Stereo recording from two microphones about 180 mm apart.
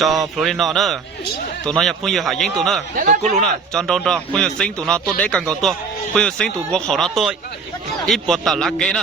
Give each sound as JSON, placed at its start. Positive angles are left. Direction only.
{"t": 0.0, "sound": "speech", "side_deg": 0}
{"t": 2.9, "sound": "speech", "side_deg": -50}
{"t": 3.7, "sound": "speech", "side_deg": 5}